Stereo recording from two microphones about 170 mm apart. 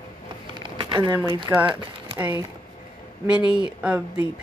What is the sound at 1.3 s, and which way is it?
Speech, 25° right (ahead or behind).